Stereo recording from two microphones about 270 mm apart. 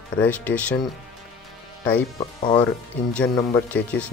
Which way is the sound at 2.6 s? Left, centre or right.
Centre.